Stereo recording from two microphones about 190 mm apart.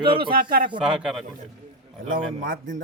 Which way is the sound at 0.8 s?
Centre (ahead or behind).